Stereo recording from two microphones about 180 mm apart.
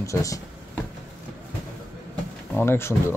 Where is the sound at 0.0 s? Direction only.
15° left (ahead or behind).